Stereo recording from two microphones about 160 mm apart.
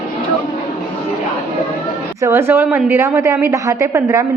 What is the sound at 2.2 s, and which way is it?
A woman's voice, 15° right (ahead or behind).